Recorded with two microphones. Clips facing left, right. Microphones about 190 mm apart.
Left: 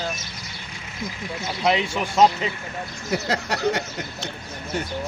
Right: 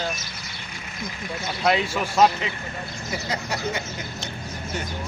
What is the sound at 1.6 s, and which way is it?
Speech, 20° left (ahead or behind).